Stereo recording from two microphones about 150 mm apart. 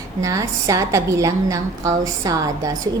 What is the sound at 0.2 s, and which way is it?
A woman's voice, 20° right (ahead or behind).